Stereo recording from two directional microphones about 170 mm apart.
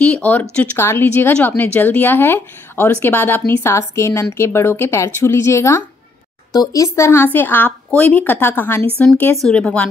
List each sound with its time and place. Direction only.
0.1 s speech: 10° left (ahead or behind)